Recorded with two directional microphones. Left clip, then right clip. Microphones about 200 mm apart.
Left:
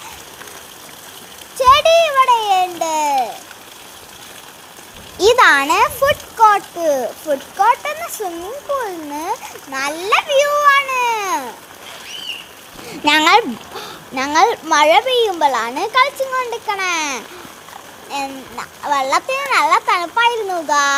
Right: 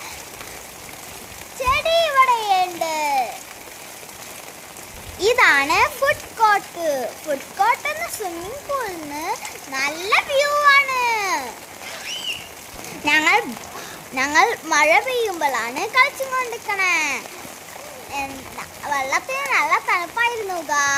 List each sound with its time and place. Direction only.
1.6 s a sound: 30° left (ahead or behind)
2.0 s babbling: 10° left (ahead or behind)
5.2 s a child's voice: 20° left (ahead or behind)
13.1 s speech: 20° left (ahead or behind)
14.3 s a child's voice: 10° left (ahead or behind)